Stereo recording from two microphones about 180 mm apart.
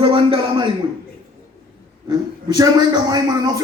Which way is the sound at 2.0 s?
25° right (ahead or behind).